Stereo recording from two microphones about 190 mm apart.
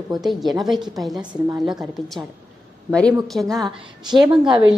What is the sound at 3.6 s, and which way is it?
Speech, 25° right (ahead or behind).